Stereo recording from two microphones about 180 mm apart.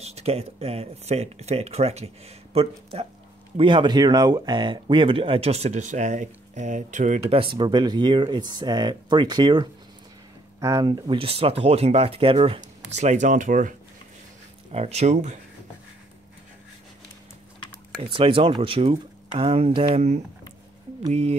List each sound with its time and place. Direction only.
0.0 s speech: 35° right (ahead or behind)
14.7 s speech: 35° right (ahead or behind)
17.9 s speech: 30° right (ahead or behind)